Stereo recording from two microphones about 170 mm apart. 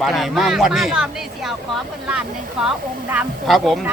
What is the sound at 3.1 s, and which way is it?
Speech, 5° right (ahead or behind).